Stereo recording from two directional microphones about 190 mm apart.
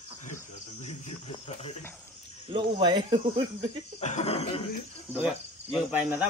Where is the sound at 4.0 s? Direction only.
35° left (ahead or behind).